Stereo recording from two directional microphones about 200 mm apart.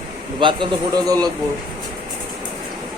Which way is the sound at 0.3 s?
25° right (ahead or behind).